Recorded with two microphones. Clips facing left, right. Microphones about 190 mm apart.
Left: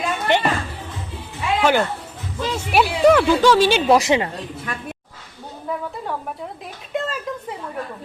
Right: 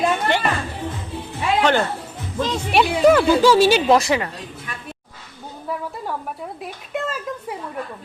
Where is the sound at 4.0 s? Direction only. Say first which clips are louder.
Left 2 dB; 20° left (ahead or behind).